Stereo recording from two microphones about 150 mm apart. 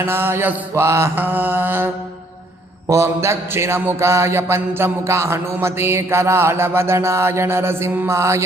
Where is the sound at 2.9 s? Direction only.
20° right (ahead or behind).